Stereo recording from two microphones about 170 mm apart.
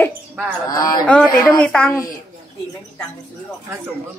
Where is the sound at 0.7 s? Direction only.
20° left (ahead or behind).